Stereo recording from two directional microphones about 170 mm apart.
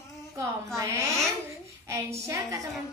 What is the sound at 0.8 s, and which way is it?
A woman's voice, 20° right (ahead or behind).